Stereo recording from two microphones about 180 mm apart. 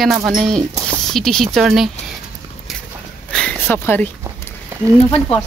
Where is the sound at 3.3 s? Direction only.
10° left (ahead or behind).